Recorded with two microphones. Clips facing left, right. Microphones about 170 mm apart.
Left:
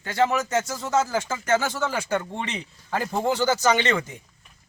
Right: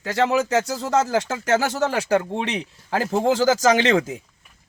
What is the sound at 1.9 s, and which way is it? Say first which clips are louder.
A man's voice: right 6 dB; 80° right.